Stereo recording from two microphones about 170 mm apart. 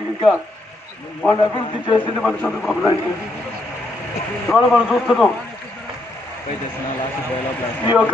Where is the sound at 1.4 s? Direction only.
30° left (ahead or behind).